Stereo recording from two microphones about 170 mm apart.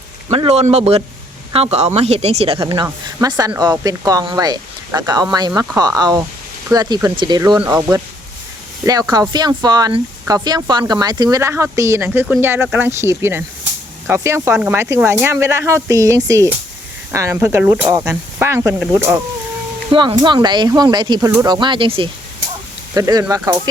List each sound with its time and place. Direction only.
0.3 s speech: 35° right (ahead or behind)
2.6 s speech: 20° right (ahead or behind)
19.9 s speech: 30° right (ahead or behind)
23.0 s speech: 20° right (ahead or behind)